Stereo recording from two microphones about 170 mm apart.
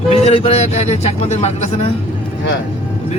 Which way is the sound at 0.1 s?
35° left (ahead or behind).